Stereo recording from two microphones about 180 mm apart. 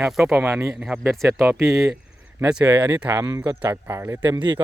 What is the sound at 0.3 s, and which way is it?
Speech, 15° right (ahead or behind).